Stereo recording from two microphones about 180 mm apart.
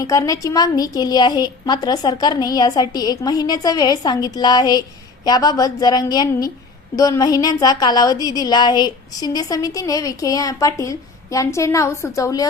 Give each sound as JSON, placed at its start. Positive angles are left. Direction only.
{"t": 0.0, "sound": "speech", "side_deg": 20}